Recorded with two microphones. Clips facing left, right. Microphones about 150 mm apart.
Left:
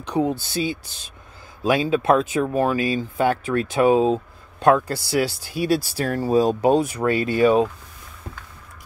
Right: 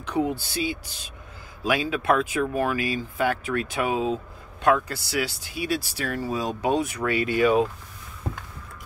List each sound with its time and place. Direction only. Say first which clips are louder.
0.2 s speech: left 3 dB; 30° left (ahead or behind)